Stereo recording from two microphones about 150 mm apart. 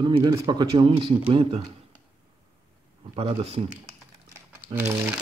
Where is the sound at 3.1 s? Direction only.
35° right (ahead or behind).